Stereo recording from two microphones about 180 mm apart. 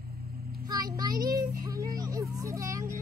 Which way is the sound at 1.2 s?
20° right (ahead or behind).